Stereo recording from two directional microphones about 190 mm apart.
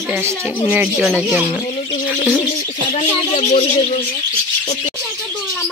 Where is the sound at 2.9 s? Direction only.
35° left (ahead or behind).